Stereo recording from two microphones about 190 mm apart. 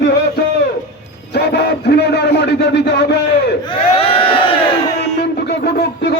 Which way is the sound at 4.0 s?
30° left (ahead or behind).